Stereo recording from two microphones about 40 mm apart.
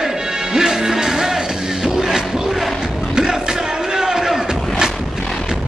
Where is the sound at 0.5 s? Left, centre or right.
Centre.